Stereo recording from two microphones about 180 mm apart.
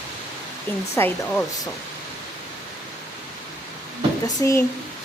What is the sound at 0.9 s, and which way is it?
Speech, 10° left (ahead or behind).